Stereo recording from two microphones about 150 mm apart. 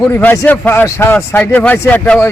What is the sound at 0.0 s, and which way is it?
A man's voice, 10° left (ahead or behind).